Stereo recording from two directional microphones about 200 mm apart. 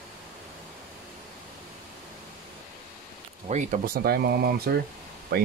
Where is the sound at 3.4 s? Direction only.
40° right (ahead or behind).